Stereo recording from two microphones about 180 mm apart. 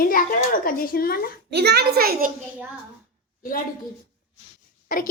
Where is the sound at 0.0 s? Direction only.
50° left (ahead or behind).